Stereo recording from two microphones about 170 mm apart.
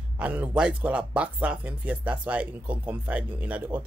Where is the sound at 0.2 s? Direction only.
10° right (ahead or behind).